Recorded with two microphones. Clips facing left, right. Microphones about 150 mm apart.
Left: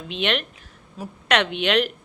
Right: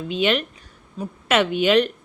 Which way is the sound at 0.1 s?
Centre (ahead or behind).